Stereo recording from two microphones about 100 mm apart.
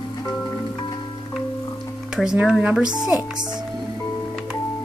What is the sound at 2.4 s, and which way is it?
Speech, 5° right (ahead or behind).